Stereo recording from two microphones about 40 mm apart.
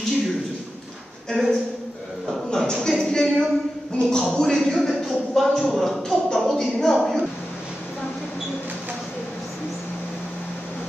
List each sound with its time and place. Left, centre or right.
1.3 s a woman's voice: centre
2.5 s a sound: centre
6.0 s chuckle: centre